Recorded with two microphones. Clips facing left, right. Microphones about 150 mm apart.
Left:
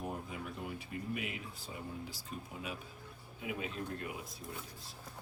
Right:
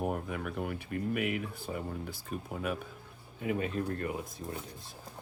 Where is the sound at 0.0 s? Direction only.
60° right (ahead or behind).